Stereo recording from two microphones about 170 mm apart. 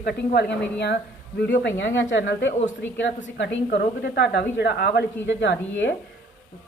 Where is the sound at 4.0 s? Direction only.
75° left (ahead or behind); by 5.9 s 90° left.